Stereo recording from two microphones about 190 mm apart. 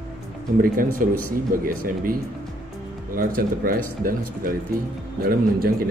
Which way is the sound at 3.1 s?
50° right (ahead or behind).